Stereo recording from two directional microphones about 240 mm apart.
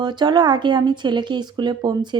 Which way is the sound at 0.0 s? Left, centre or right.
Centre.